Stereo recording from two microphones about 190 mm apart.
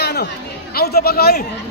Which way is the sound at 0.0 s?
55° left (ahead or behind).